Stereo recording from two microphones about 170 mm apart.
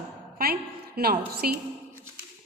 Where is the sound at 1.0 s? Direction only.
65° right (ahead or behind).